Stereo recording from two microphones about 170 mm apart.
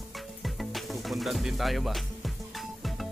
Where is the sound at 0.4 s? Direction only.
Centre (ahead or behind).